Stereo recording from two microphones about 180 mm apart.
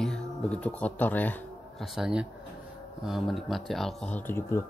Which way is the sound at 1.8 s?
5° right (ahead or behind).